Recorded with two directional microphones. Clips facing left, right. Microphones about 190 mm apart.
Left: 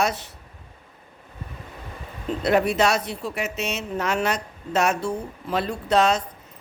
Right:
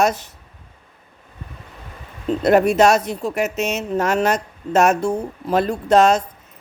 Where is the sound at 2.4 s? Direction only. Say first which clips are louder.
Right 6 dB; 45° right (ahead or behind).